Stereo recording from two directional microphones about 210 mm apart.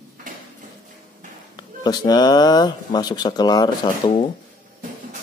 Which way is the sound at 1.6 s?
20° left (ahead or behind).